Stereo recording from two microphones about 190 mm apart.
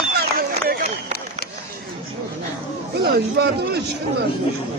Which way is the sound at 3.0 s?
60° right (ahead or behind).